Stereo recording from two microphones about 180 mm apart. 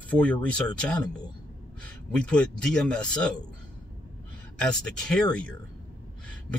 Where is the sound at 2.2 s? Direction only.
5° left (ahead or behind).